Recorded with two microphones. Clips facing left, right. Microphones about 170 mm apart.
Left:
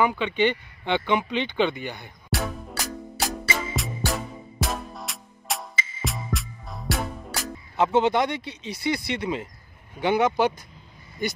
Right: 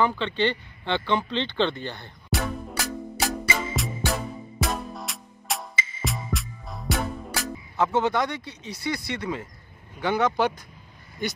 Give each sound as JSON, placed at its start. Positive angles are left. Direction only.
{"t": 0.0, "sound": "speech", "side_deg": 15}
{"t": 2.3, "sound": "music", "side_deg": 0}
{"t": 7.7, "sound": "speech", "side_deg": 25}